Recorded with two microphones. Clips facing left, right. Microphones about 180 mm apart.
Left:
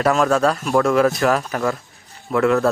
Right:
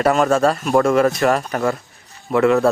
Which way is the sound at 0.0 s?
Centre (ahead or behind).